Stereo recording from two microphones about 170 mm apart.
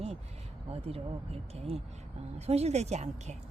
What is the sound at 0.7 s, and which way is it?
Speech, 35° right (ahead or behind).